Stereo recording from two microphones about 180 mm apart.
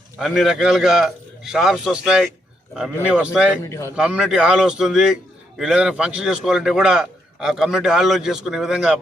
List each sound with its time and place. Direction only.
0.2 s a man's voice: centre (ahead or behind)
3.6 s a man's voice: 15° left (ahead or behind)
3.9 s a man's voice: 5° right (ahead or behind)